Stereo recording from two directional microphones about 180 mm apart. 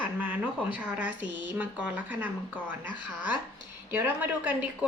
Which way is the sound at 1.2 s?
85° right.